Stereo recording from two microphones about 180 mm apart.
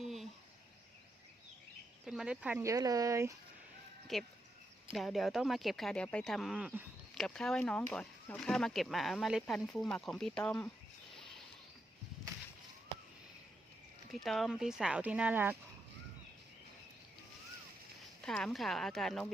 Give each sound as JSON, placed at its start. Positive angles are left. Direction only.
{"t": 0.0, "sound": "a sound", "side_deg": 0}
{"t": 2.0, "sound": "speech", "side_deg": -5}
{"t": 4.1, "sound": "speech", "side_deg": 0}
{"t": 14.3, "sound": "speech", "side_deg": 0}
{"t": 18.2, "sound": "speech", "side_deg": 0}